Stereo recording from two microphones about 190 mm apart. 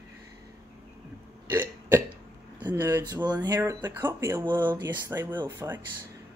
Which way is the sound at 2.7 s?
10° right (ahead or behind).